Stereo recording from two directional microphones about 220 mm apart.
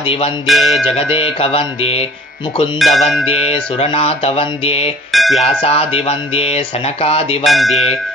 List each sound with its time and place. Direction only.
0.0 s speech: 25° left (ahead or behind)
0.5 s music: centre (ahead or behind)
0.9 s speech: 25° left (ahead or behind)
2.8 s music: centre (ahead or behind)
3.3 s speech: 25° left (ahead or behind)
5.1 s music: centre (ahead or behind)
5.4 s speech: 25° left (ahead or behind)
7.4 s music: centre (ahead or behind)